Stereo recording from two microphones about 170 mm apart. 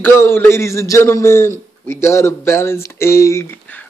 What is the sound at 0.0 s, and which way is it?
Speech, 15° left (ahead or behind).